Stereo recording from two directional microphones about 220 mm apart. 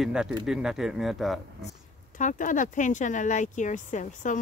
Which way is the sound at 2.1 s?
35° left (ahead or behind).